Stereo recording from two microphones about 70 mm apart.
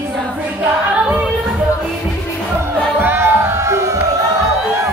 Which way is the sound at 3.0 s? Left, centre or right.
Right.